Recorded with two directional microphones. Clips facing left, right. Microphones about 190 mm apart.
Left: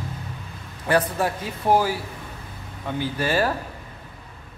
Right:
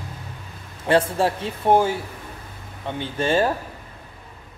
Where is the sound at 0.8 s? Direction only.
25° right (ahead or behind).